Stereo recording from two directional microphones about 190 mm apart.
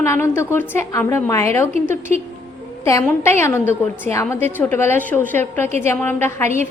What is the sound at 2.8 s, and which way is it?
A woman's voice, 15° left (ahead or behind).